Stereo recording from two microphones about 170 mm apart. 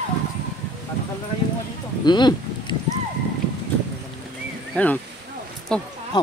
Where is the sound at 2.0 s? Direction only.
25° left (ahead or behind).